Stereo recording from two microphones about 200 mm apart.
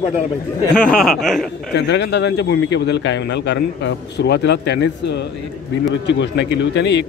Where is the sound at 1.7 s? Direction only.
60° left (ahead or behind).